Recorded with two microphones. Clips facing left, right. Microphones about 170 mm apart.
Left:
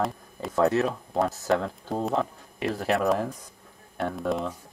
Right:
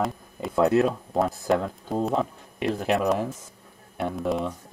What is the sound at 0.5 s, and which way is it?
Speech, 15° right (ahead or behind).